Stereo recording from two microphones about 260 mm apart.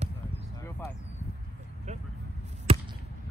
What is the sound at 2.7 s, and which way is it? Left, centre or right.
Basketball bounce, right.